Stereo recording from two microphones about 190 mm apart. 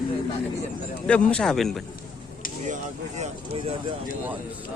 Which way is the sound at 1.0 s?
5° left (ahead or behind).